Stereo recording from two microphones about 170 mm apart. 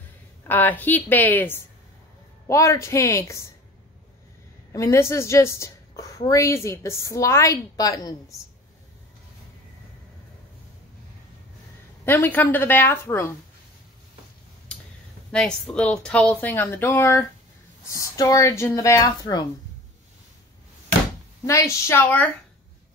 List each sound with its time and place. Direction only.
0.4 s speech: 10° left (ahead or behind)
4.7 s a woman's voice: 15° left (ahead or behind)
12.0 s speech: 10° left (ahead or behind)
14.7 s clicking: 5° left (ahead or behind)
15.3 s a woman's voice: 5° left (ahead or behind); by 19.4 s 20° left (ahead or behind)
21.5 s speech: 15° left (ahead or behind)